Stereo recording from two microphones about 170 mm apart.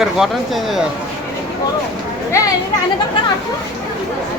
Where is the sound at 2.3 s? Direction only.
20° left (ahead or behind).